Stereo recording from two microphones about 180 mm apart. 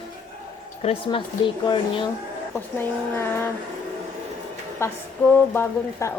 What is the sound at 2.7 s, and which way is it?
Speech, 10° left (ahead or behind).